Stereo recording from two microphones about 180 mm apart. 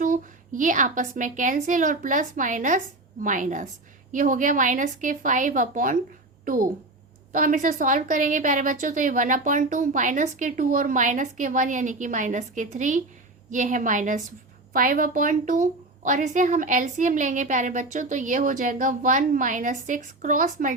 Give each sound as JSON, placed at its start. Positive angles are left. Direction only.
{"t": 0.0, "sound": "a woman's voice", "side_deg": -45}